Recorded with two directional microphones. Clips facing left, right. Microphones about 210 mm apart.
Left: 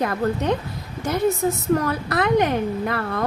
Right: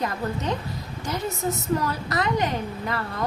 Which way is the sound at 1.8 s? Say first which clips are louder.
Left 4 dB; 55° left (ahead or behind).